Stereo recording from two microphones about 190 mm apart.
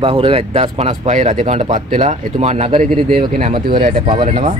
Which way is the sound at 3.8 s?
45° right (ahead or behind).